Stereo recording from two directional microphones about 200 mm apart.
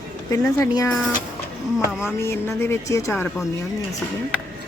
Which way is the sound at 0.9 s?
Centre (ahead or behind).